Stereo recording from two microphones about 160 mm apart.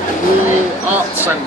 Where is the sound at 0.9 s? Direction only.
10° right (ahead or behind).